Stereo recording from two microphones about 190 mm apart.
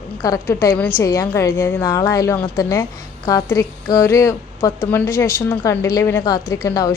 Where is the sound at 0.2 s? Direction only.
15° left (ahead or behind).